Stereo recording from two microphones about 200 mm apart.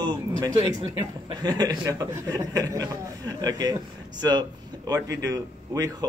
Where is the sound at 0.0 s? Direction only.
20° right (ahead or behind).